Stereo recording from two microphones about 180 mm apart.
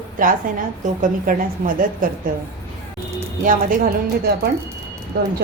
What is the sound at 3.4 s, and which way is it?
Speech, 50° right (ahead or behind).